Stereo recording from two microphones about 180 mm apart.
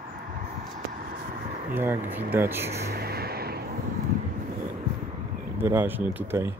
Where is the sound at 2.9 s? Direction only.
60° right (ahead or behind).